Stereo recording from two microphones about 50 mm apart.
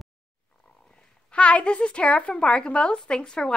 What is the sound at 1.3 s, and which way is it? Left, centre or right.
A woman's voice, left.